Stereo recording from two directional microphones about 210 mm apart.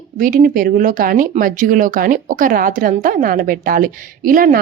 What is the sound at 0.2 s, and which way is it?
Speech, 40° right (ahead or behind).